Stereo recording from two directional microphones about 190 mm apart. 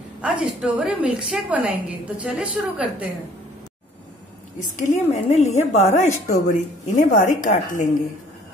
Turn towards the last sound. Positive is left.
turn(degrees=40)  # may be behind; listen again after turning